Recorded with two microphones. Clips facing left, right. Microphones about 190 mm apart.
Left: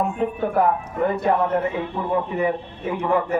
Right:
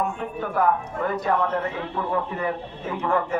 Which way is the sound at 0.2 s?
25° left (ahead or behind).